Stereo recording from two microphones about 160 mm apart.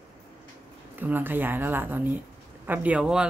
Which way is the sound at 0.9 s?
10° right (ahead or behind).